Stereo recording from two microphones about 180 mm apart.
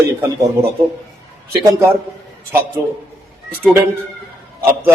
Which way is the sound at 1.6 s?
15° right (ahead or behind).